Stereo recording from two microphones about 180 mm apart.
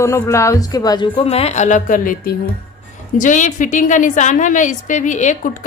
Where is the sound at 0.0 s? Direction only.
15° left (ahead or behind).